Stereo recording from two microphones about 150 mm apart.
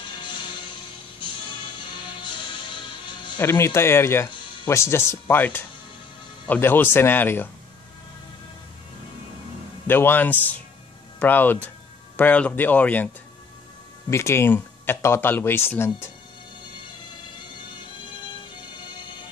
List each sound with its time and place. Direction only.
2.2 s music: 30° left (ahead or behind)
3.3 s speech: 15° left (ahead or behind)
9.8 s speech: 15° left (ahead or behind)
14.1 s speech: 15° left (ahead or behind)